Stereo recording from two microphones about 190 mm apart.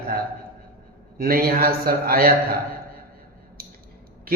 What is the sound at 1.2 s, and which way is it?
A man's voice, 50° right (ahead or behind).